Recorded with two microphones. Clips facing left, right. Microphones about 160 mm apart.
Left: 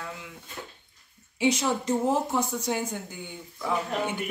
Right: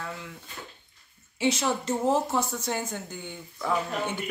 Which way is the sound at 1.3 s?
15° left (ahead or behind).